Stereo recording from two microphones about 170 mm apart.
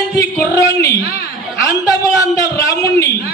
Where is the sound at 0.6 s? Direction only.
20° left (ahead or behind).